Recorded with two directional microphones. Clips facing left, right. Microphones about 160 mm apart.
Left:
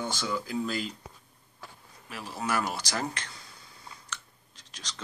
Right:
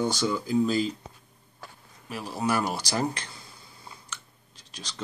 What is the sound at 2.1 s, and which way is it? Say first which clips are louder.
Speech: right 4 dB; 15° right (ahead or behind).